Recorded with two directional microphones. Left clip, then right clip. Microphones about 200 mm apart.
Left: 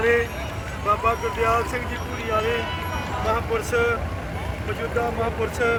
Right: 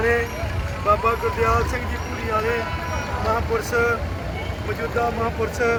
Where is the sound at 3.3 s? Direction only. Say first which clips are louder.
Right 1 dB; 5° left (ahead or behind).